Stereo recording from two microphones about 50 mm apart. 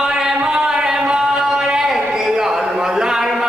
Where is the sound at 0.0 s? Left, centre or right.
Centre.